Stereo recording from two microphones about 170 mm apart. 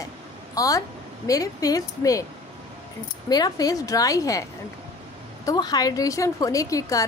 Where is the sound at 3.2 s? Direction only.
20° left (ahead or behind).